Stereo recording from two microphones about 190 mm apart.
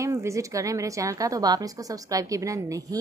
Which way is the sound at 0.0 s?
15° right (ahead or behind).